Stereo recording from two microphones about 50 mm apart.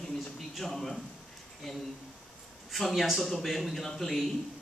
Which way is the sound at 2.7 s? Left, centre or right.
Centre.